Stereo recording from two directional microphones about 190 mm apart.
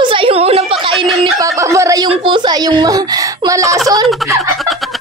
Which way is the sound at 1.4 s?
15° right (ahead or behind).